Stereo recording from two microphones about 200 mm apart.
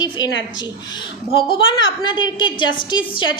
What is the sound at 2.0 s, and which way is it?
Speech, 25° left (ahead or behind).